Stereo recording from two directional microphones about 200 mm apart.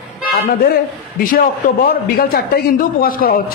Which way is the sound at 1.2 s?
45° left (ahead or behind).